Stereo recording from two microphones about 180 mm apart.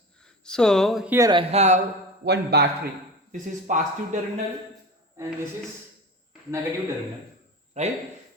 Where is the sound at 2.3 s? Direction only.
65° right (ahead or behind).